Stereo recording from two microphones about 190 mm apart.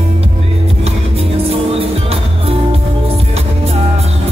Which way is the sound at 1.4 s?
30° right (ahead or behind).